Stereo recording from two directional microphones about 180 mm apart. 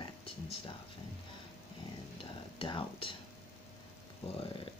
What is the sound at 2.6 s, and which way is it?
Speech, 30° left (ahead or behind).